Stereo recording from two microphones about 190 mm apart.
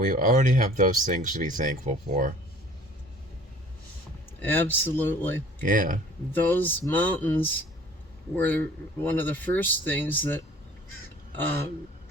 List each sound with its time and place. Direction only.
0.0 s speech: 45° right (ahead or behind)
4.4 s speech: 10° left (ahead or behind)
5.6 s speech: 45° right (ahead or behind)
6.3 s speech: 10° left (ahead or behind)